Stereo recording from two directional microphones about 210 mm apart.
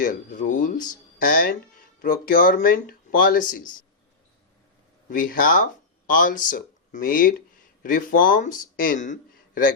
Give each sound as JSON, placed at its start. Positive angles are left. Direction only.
{"t": 0.0, "sound": "speech", "side_deg": 40}
{"t": 5.0, "sound": "speech", "side_deg": 40}